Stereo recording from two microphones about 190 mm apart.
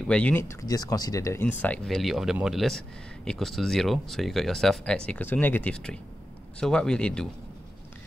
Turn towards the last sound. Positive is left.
turn(degrees=5)  # may be behind; listen again after turning